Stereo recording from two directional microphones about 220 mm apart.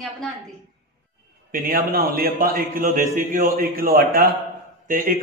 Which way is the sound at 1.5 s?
40° right (ahead or behind).